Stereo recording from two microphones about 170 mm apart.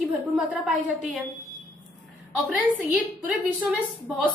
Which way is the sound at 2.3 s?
10° right (ahead or behind).